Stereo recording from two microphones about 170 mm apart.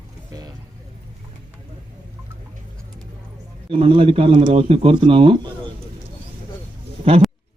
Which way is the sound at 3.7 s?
35° right (ahead or behind).